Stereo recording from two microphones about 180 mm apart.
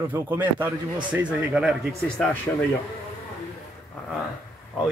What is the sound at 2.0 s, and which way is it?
Speech, 5° left (ahead or behind).